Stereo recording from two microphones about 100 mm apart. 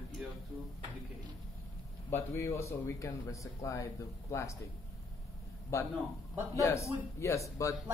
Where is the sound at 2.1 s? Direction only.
25° left (ahead or behind).